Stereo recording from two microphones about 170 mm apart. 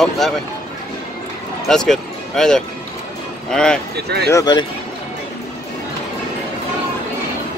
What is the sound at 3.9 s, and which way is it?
Speech, 75° right (ahead or behind).